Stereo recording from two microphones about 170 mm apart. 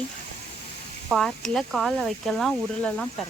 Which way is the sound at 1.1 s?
Centre (ahead or behind).